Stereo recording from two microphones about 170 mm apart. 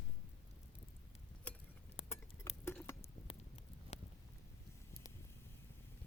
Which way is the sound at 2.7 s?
15° left (ahead or behind).